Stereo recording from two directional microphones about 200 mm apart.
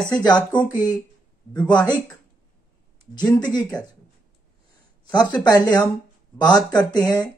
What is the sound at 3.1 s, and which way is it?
Speech, 20° left (ahead or behind).